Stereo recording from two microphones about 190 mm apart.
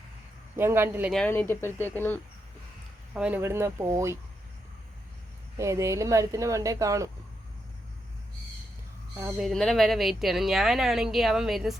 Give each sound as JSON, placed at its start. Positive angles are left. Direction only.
{"t": 0.5, "sound": "speech", "side_deg": -10}
{"t": 1.1, "sound": "speech", "side_deg": 10}
{"t": 3.2, "sound": "speech", "side_deg": -10}
{"t": 5.5, "sound": "speech", "side_deg": -15}
{"t": 9.4, "sound": "speech", "side_deg": 0}